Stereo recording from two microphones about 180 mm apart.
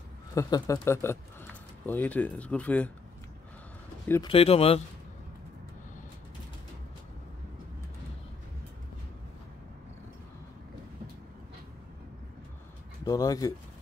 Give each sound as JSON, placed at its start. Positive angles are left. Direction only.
{"t": 0.3, "sound": "speech", "side_deg": 20}
{"t": 4.3, "sound": "speech", "side_deg": 35}
{"t": 13.0, "sound": "speech", "side_deg": 20}